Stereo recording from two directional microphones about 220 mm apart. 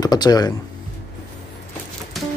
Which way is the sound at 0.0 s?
15° left (ahead or behind).